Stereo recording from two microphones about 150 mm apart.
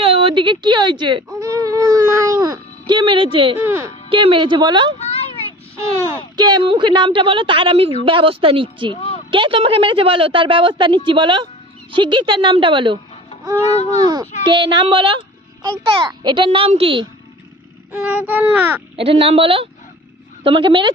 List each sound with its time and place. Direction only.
0.0 s a woman's voice: 40° right (ahead or behind)
1.4 s baby cry: 20° right (ahead or behind)
3.7 s a child's voice: 20° right (ahead or behind)
4.1 s a woman's voice: 35° right (ahead or behind)
4.9 s a sound: 45° left (ahead or behind)
6.3 s a woman's voice: 30° right (ahead or behind)
9.0 s a sound: 40° left (ahead or behind)
9.3 s a woman's voice: 35° right (ahead or behind)
14.0 s a child's voice: 25° right (ahead or behind)
18.0 s speech: 10° right (ahead or behind)
18.9 s a woman's voice: 40° right (ahead or behind)